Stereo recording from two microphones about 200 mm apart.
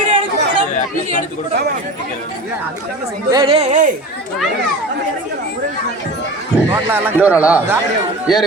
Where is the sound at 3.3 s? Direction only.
25° right (ahead or behind).